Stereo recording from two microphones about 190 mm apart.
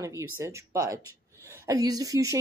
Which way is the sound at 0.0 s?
15° right (ahead or behind).